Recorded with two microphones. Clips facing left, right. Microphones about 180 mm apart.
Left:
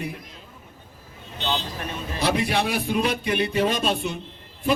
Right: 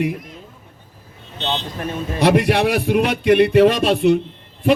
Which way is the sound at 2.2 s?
70° right (ahead or behind).